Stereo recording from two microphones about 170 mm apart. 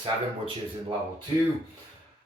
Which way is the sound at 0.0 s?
30° right (ahead or behind).